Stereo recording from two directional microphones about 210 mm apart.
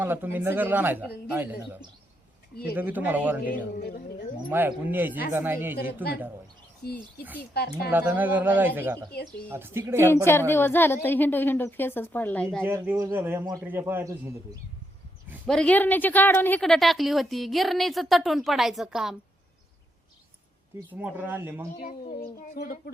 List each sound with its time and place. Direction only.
0.0 s a man's voice: 10° right (ahead or behind)
2.7 s a man's voice: 10° right (ahead or behind)
3.5 s a child's voice: 45° left (ahead or behind)
4.4 s a man's voice: 10° right (ahead or behind)
6.8 s a child's voice: 45° left (ahead or behind)
7.9 s a man's voice: 10° right (ahead or behind)
10.2 s a woman's voice: 10° left (ahead or behind)
12.6 s a man's voice: 10° right (ahead or behind)
15.4 s a woman's voice: 5° left (ahead or behind)
20.7 s a man's voice: 10° right (ahead or behind)
21.8 s a child's voice: 45° left (ahead or behind)